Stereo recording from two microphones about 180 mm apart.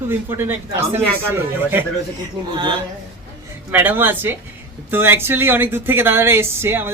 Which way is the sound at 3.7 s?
10° right (ahead or behind).